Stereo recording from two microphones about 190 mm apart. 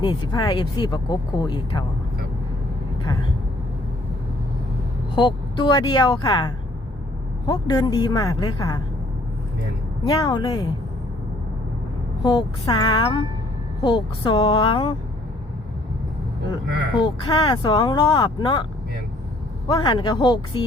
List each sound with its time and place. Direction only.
0.0 s speech: 25° left (ahead or behind)
5.1 s speech: 25° left (ahead or behind)
10.0 s speech: 20° left (ahead or behind)
12.2 s speech: 20° left (ahead or behind)
17.0 s speech: 25° left (ahead or behind)
19.6 s speech: 25° left (ahead or behind)